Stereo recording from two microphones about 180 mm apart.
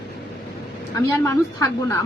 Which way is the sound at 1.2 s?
15° left (ahead or behind).